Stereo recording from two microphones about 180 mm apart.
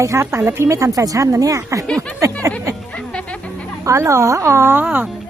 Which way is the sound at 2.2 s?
20° right (ahead or behind).